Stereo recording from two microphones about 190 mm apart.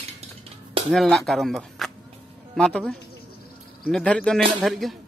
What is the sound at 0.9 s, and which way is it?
Speech, centre (ahead or behind).